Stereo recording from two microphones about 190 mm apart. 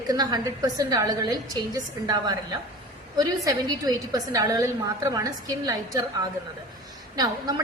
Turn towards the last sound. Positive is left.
turn(degrees=-20)  # may be behind; listen again after turning